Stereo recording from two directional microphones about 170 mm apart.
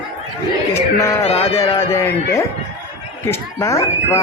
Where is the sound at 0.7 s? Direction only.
15° left (ahead or behind).